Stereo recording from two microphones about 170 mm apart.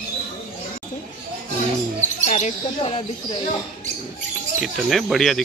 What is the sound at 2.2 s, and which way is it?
Speech, 45° left (ahead or behind).